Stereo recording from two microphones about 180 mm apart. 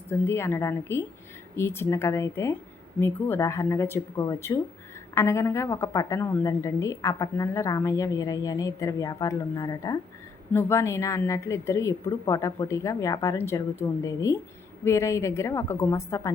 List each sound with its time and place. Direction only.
0.1 s a woman's voice: 15° left (ahead or behind)